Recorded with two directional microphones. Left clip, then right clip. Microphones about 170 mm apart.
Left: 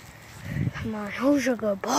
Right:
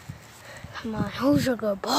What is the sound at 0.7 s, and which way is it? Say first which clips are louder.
Speech: right 3 dB; 5° right (ahead or behind).